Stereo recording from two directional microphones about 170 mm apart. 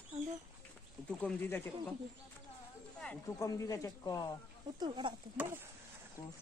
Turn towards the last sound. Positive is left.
turn(degrees=-10)  # may be behind; listen again after turning